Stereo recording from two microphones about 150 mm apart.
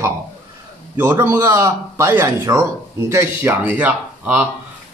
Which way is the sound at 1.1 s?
15° right (ahead or behind).